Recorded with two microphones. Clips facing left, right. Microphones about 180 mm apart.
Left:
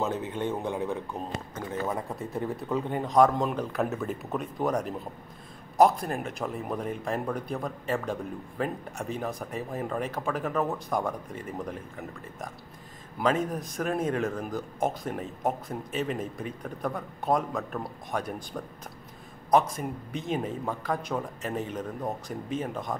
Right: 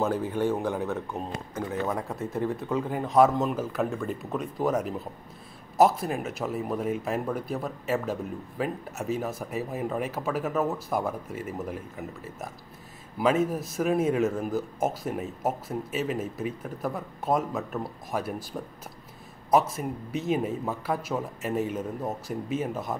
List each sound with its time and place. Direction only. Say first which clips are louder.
0.1 s a man's voice: right 4 dB; 20° left (ahead or behind)
1.5 s speech: right 3 dB; centre (ahead or behind)
19.5 s speech: even; 5° right (ahead or behind)